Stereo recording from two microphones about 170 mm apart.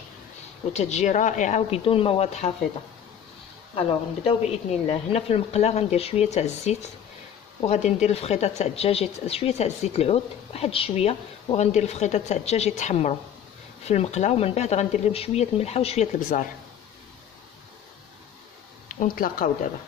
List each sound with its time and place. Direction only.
0.7 s speech: 40° left (ahead or behind)
3.7 s speech: 35° left (ahead or behind)
16.2 s speech: 50° left (ahead or behind)
18.9 s speech: 55° left (ahead or behind)